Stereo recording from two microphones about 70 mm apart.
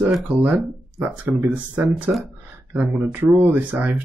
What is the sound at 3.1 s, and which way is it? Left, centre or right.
Speech, right.